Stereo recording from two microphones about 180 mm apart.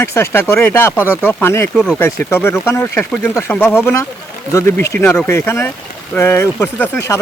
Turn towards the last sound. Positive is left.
turn(degrees=15)  # may be behind; listen again after turning